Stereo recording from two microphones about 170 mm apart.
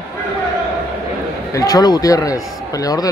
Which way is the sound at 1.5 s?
20° left (ahead or behind).